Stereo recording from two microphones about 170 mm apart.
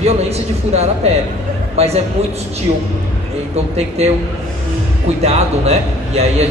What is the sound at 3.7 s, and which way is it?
Speech, 40° right (ahead or behind).